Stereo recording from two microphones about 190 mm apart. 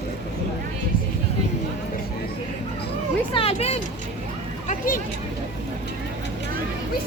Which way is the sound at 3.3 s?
30° left (ahead or behind).